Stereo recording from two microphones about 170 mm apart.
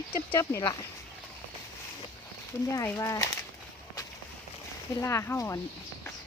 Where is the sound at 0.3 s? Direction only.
15° left (ahead or behind).